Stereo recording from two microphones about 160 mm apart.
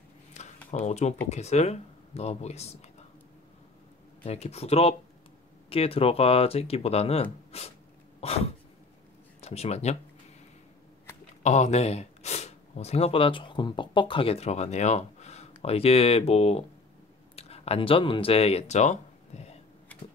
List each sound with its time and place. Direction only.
0.7 s speech: 50° left (ahead or behind)
4.2 s speech: 40° left (ahead or behind)
8.2 s cough: 40° left (ahead or behind)
9.4 s speech: 40° left (ahead or behind)
11.4 s speech: 45° left (ahead or behind)
19.9 s a sound: 10° left (ahead or behind)